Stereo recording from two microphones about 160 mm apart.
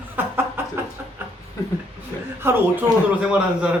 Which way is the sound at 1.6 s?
20° left (ahead or behind).